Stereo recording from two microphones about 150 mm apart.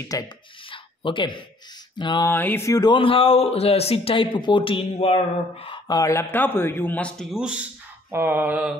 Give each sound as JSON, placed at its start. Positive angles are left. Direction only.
{"t": 0.1, "sound": "speech", "side_deg": 25}
{"t": 0.7, "sound": "a sound", "side_deg": 35}
{"t": 2.0, "sound": "mantra", "side_deg": 30}
{"t": 2.2, "sound": "speech", "side_deg": 15}
{"t": 5.9, "sound": "a man's voice", "side_deg": 20}
{"t": 8.1, "sound": "mantra", "side_deg": -15}